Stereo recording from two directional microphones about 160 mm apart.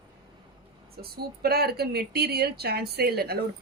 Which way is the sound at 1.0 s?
75° right (ahead or behind).